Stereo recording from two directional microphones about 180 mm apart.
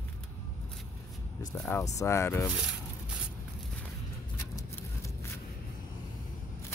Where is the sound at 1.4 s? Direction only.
15° left (ahead or behind).